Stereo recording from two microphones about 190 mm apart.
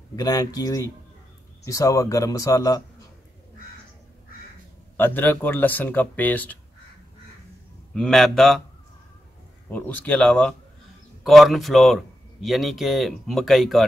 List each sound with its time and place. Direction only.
0.1 s speech: 20° left (ahead or behind)
4.9 s speech: 10° left (ahead or behind)
7.9 s a man's voice: centre (ahead or behind)
9.7 s a man's voice: 10° left (ahead or behind)